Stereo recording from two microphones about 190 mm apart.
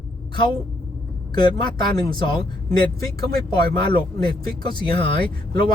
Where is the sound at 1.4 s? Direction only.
25° left (ahead or behind).